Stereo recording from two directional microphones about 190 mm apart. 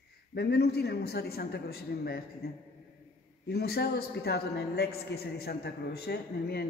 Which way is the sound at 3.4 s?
55° left (ahead or behind).